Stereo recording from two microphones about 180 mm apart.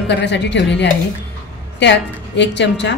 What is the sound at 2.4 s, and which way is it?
Speech, 75° left (ahead or behind).